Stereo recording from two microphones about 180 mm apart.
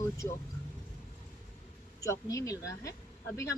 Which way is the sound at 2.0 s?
15° left (ahead or behind).